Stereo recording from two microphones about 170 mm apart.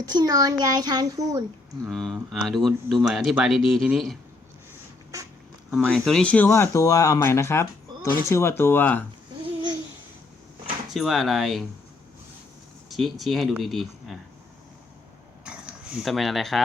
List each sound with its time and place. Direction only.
0.1 s a child's voice: 20° right (ahead or behind)
1.9 s speech: centre (ahead or behind)
5.7 s speech: centre (ahead or behind)
10.9 s speech: centre (ahead or behind)
12.9 s speech: centre (ahead or behind)
15.4 s a sound: 5° right (ahead or behind)